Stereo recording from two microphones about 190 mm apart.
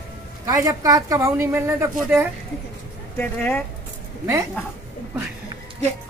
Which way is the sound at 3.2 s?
10° left (ahead or behind).